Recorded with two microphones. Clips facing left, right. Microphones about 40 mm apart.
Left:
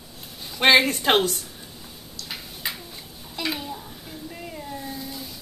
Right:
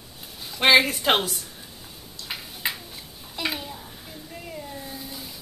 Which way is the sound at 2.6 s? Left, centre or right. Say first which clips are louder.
Right 2 dB; right.